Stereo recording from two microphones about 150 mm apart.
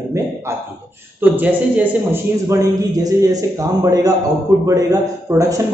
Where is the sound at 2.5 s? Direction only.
25° right (ahead or behind).